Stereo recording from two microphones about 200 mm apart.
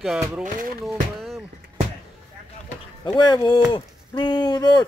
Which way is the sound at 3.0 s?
20° left (ahead or behind).